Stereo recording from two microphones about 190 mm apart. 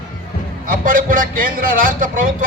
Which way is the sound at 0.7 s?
45° right (ahead or behind).